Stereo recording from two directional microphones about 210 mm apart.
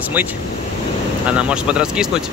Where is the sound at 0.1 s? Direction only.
10° right (ahead or behind).